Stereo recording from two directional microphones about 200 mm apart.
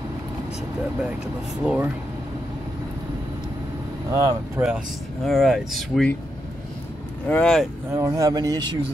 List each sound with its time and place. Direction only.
1.6 s speech: 5° right (ahead or behind)
4.1 s speech: 20° right (ahead or behind)
4.6 s speech: 5° right (ahead or behind)
7.2 s speech: 5° left (ahead or behind)
7.9 s speech: 15° right (ahead or behind)